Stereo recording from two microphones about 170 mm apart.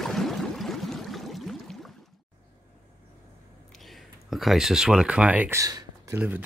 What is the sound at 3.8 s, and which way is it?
Speech, centre (ahead or behind).